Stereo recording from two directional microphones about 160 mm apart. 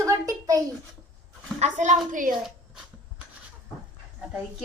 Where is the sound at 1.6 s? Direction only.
45° right (ahead or behind).